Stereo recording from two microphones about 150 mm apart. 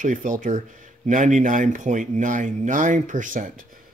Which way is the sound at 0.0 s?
55° right (ahead or behind).